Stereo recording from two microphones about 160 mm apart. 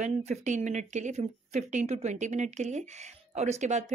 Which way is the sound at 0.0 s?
45° right (ahead or behind).